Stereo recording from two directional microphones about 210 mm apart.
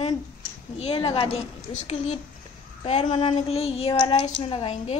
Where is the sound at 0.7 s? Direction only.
30° left (ahead or behind).